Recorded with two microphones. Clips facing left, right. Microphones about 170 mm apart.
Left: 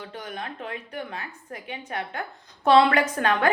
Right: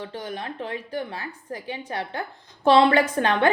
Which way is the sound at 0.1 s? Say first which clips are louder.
Right 3 dB; 30° right (ahead or behind).